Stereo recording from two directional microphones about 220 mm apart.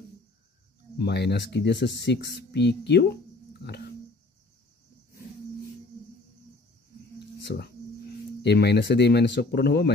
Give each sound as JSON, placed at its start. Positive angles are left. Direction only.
{"t": 0.9, "sound": "speech", "side_deg": 50}
{"t": 7.4, "sound": "speech", "side_deg": 50}